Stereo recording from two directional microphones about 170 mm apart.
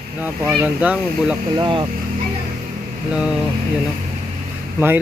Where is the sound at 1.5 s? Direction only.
25° right (ahead or behind).